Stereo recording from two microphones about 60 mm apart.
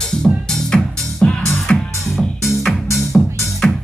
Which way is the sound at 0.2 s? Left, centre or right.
Centre.